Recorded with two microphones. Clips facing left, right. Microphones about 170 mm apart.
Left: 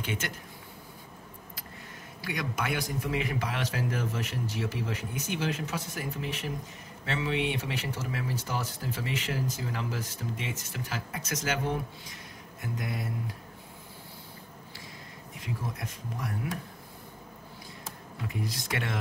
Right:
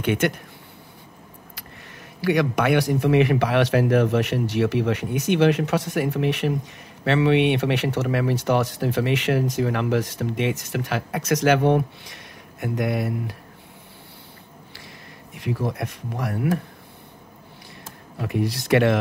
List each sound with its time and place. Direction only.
0.0 s speech: 65° right (ahead or behind)
2.2 s speech: 70° right (ahead or behind)
15.3 s speech: 70° right (ahead or behind)
18.2 s speech: 70° right (ahead or behind)